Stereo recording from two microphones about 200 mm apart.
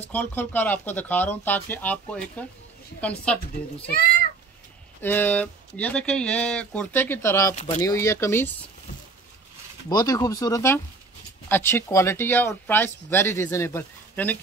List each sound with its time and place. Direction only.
0.0 s speech: 10° left (ahead or behind)
5.0 s speech: 10° left (ahead or behind)
9.8 s speech: 20° left (ahead or behind)